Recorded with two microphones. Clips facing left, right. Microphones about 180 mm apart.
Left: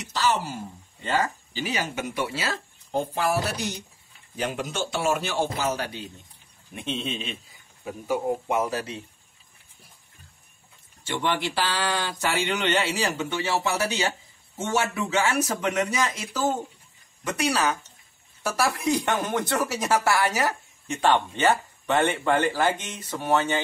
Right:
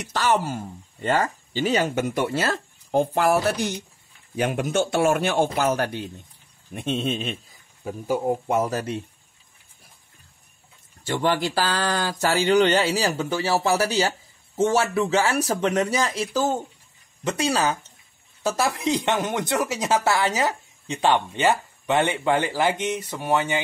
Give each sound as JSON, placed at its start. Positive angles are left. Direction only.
{"t": 0.1, "sound": "speech", "side_deg": -55}
{"t": 11.1, "sound": "speech", "side_deg": -40}